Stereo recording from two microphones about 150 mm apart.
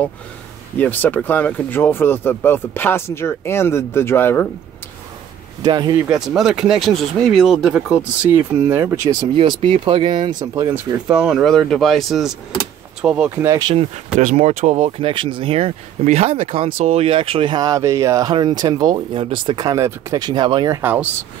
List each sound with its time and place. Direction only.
0.7 s speech: 10° left (ahead or behind)
5.6 s speech: 30° right (ahead or behind)
6.1 s speech: 5° right (ahead or behind)
9.1 s speech: 30° right (ahead or behind)
11.1 s speech: 5° right (ahead or behind)
13.3 s speech: 20° right (ahead or behind)
14.2 s speech: 50° right (ahead or behind); by 20.8 s 30° right (ahead or behind)
20.8 s speech: 10° right (ahead or behind)